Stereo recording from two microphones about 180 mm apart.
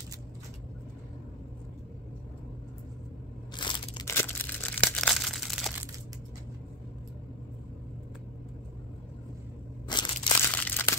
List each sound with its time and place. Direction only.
3.5 s scissors: 25° left (ahead or behind)
4.1 s a sound: 10° left (ahead or behind)
9.8 s crushing: 25° left (ahead or behind)
10.5 s crumpling: 10° left (ahead or behind)